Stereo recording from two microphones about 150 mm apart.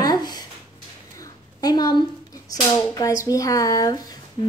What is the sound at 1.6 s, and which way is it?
Speech, 25° left (ahead or behind).